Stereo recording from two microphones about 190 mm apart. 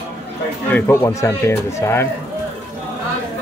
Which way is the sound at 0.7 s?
15° left (ahead or behind).